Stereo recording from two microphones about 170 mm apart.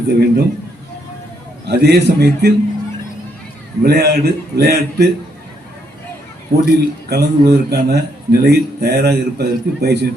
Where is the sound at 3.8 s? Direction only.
70° right (ahead or behind).